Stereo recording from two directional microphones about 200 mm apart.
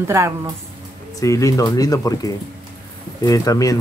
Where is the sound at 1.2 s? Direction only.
15° left (ahead or behind).